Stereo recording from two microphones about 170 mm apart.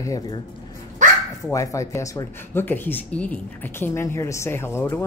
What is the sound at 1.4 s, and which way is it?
Speech, 20° left (ahead or behind).